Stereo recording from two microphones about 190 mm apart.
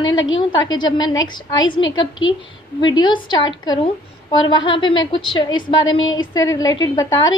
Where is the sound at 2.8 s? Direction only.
25° left (ahead or behind).